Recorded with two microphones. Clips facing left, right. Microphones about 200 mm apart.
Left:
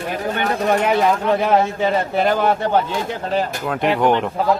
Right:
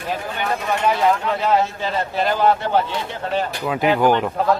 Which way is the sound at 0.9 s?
55° left (ahead or behind).